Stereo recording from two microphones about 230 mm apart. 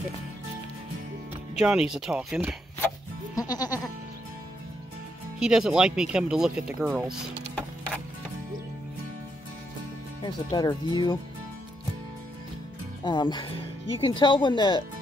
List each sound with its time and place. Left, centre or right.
1.6 s speech: centre
3.3 s music: centre
5.4 s speech: centre
10.2 s speech: centre
13.0 s speech: centre